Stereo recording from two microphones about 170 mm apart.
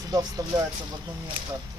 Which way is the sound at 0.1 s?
25° right (ahead or behind).